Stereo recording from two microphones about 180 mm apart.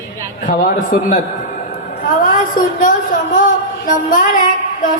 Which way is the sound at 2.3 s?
50° left (ahead or behind).